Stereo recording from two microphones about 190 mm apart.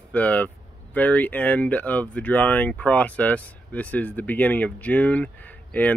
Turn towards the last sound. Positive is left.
turn(degrees=5)  # may be behind; listen again after turning